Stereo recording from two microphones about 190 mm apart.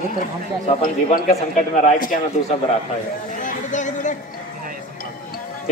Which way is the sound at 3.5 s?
40° left (ahead or behind).